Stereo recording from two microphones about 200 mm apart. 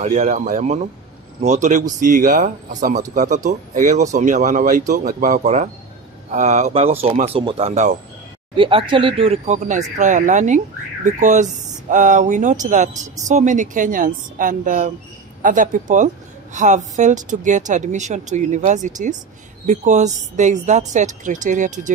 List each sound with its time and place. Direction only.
0.0 s speech: 35° right (ahead or behind)
8.5 s speech: 25° right (ahead or behind)